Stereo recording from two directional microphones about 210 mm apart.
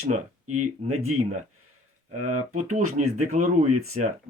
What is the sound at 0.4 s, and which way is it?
Speech, 90° right.